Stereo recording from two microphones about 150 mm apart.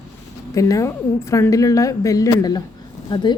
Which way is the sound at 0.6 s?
20° left (ahead or behind).